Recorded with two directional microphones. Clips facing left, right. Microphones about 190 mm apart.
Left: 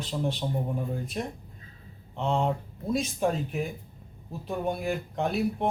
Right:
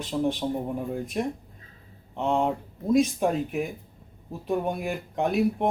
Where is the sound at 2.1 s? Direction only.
10° right (ahead or behind).